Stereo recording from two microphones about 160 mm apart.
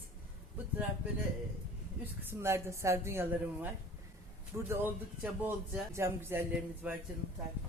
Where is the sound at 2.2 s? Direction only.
15° right (ahead or behind).